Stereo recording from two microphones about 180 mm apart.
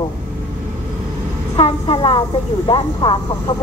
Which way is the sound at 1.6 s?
30° left (ahead or behind).